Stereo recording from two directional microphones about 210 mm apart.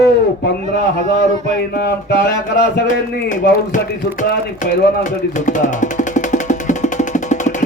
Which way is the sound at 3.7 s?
40° left (ahead or behind).